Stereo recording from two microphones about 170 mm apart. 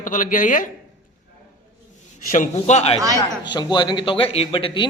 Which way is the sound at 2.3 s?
45° left (ahead or behind).